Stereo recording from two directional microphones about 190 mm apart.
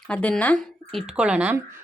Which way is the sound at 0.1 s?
5° left (ahead or behind).